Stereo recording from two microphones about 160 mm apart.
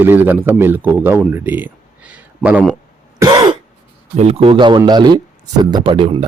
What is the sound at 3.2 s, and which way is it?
Throat clearing, 25° right (ahead or behind).